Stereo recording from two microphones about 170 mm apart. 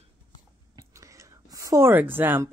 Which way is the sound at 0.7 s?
15° right (ahead or behind).